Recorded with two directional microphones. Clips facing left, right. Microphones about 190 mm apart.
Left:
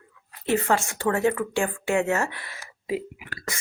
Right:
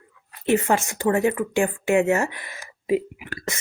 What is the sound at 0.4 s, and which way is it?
Speech, 20° right (ahead or behind).